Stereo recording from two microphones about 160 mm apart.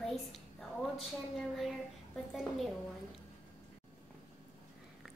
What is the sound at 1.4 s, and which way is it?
A child's voice, centre (ahead or behind).